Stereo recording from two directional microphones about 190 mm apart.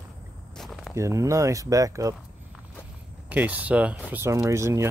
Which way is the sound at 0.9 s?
15° right (ahead or behind).